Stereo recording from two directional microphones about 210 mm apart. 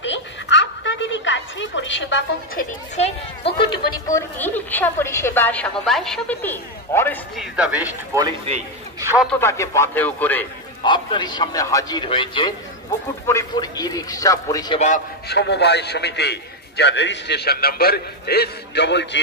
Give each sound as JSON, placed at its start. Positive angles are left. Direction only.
{"t": 0.0, "sound": "a sound", "side_deg": 60}
{"t": 3.0, "sound": "speech", "side_deg": 25}
{"t": 3.9, "sound": "a woman's voice", "side_deg": 10}
{"t": 7.3, "sound": "a man's voice", "side_deg": -5}
{"t": 9.0, "sound": "a sound", "side_deg": -5}
{"t": 9.3, "sound": "a woman's voice", "side_deg": 10}
{"t": 10.8, "sound": "a man's voice", "side_deg": 20}
{"t": 15.2, "sound": "a man's voice", "side_deg": 55}